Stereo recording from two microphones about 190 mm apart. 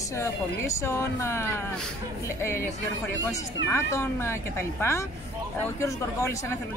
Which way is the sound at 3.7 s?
15° left (ahead or behind).